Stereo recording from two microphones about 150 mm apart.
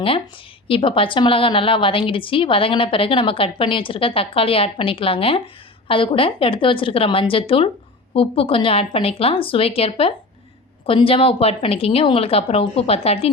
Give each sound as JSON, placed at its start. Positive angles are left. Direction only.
{"t": 0.7, "sound": "a woman's voice", "side_deg": 35}